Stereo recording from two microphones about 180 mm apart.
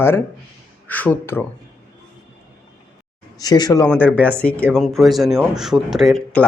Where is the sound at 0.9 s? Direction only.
10° left (ahead or behind).